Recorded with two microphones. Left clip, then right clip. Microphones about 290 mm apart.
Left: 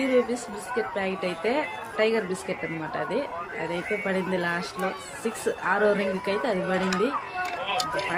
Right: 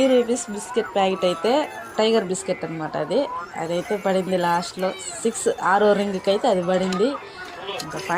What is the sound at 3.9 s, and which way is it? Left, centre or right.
Speech, centre.